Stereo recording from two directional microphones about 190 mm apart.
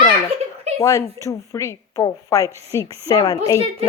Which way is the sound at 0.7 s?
35° right (ahead or behind).